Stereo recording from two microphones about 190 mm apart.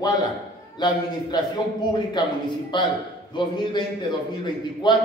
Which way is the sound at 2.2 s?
25° left (ahead or behind).